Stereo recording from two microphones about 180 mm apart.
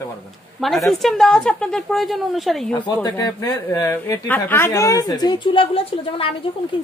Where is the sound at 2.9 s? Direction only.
20° left (ahead or behind).